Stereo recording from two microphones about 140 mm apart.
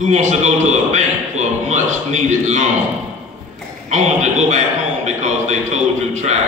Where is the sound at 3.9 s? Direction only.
60° right (ahead or behind).